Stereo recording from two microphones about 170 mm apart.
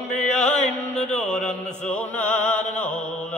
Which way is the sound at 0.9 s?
5° left (ahead or behind).